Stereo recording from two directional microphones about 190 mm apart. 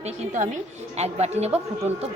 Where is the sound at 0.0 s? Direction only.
35° right (ahead or behind).